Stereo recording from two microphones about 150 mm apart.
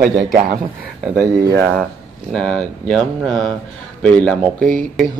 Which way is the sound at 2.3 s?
5° left (ahead or behind).